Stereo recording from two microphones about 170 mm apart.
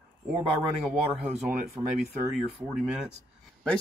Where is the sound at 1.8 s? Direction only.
25° right (ahead or behind).